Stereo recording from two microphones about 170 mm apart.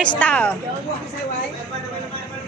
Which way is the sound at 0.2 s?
10° left (ahead or behind).